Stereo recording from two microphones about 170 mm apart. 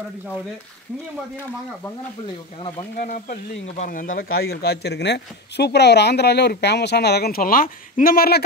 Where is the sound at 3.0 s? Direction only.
50° left (ahead or behind).